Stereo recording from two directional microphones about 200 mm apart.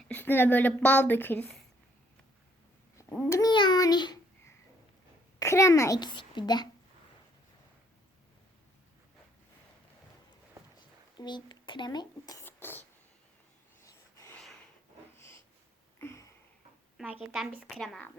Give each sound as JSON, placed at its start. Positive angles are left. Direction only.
{"t": 0.1, "sound": "speech", "side_deg": 10}
{"t": 3.2, "sound": "babbling", "side_deg": 15}
{"t": 5.4, "sound": "speech", "side_deg": 15}
{"t": 11.2, "sound": "speech", "side_deg": 20}
{"t": 13.8, "sound": "a sound", "side_deg": 15}
{"t": 16.0, "sound": "a sound", "side_deg": 15}
{"t": 17.2, "sound": "speech", "side_deg": 0}